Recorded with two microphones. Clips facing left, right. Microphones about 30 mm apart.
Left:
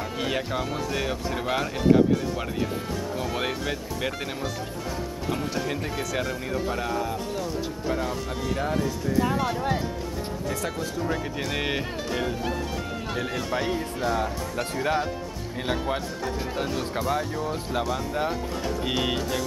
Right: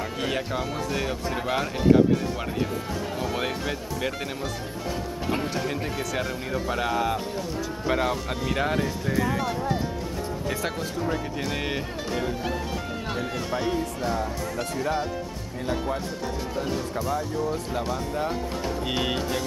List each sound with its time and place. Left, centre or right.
0.2 s speech: centre
3.2 s speech: centre
5.7 s speech: centre
6.7 s speech: right
8.5 s speech: right
11.5 s speech: centre
18.9 s speech: centre